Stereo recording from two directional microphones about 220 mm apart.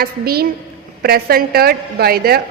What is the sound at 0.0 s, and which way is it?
A woman's voice, 45° right (ahead or behind).